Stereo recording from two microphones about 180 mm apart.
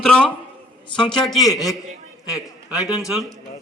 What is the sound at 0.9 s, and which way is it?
A man's voice, 5° left (ahead or behind).